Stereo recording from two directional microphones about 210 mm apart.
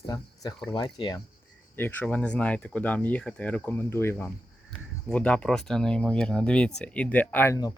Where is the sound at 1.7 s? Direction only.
10° left (ahead or behind).